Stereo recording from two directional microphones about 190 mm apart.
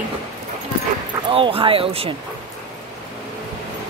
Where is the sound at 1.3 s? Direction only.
30° right (ahead or behind).